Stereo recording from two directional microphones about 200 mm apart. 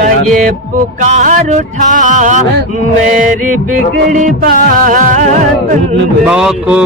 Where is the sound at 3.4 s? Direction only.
40° right (ahead or behind).